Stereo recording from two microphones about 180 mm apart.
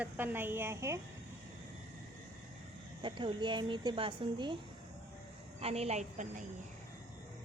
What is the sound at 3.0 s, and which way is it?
A woman's voice, 25° right (ahead or behind).